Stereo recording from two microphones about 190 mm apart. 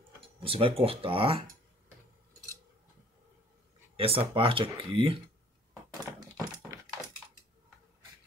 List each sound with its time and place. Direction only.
0.4 s speech: 30° right (ahead or behind)
3.9 s speech: 30° right (ahead or behind)
6.1 s a sound: 15° right (ahead or behind)